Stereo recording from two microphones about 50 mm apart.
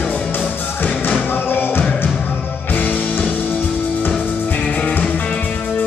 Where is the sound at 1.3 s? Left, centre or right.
Left.